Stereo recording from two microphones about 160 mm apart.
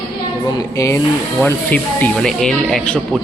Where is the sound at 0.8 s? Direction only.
20° left (ahead or behind); by 3.0 s 5° left (ahead or behind).